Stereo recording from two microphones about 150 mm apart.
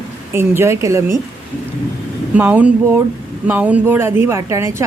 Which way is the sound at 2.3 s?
10° right (ahead or behind).